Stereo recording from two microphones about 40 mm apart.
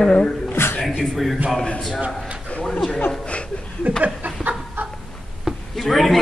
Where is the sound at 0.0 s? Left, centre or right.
Left.